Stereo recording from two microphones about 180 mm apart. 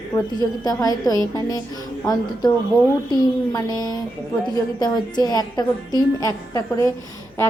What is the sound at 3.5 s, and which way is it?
A woman's voice, 20° left (ahead or behind).